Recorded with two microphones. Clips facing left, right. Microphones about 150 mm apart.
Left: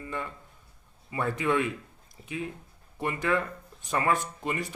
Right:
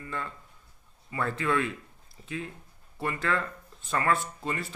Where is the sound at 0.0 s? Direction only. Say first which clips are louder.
Left 1 dB; 15° left (ahead or behind).